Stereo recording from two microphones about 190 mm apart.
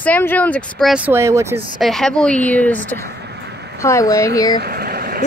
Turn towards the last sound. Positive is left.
turn(degrees=-50)  # may be behind; listen again after turning